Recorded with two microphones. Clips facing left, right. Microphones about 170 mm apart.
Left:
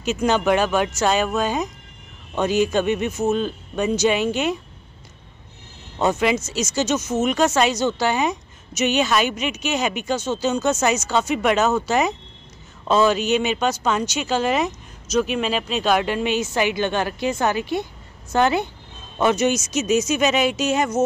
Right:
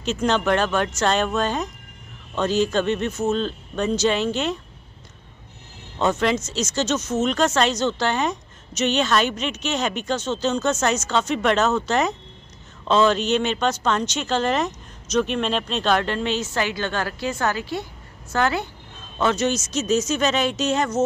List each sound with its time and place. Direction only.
0.0 s speech: 10° left (ahead or behind)
5.9 s speech: 10° left (ahead or behind)